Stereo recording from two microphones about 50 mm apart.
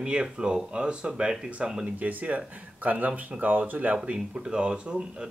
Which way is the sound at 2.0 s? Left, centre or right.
Right.